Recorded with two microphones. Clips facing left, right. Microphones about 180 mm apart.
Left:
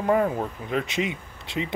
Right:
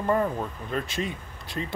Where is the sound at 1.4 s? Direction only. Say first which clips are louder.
Left 4 dB; 25° left (ahead or behind).